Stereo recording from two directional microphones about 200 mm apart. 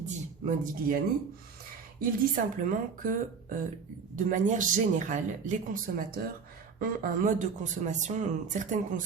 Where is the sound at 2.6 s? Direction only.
40° right (ahead or behind).